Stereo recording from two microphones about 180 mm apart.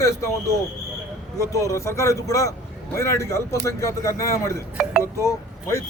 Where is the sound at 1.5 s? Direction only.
15° left (ahead or behind).